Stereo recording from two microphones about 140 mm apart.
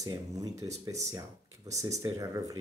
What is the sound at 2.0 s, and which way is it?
Speech, 25° right (ahead or behind).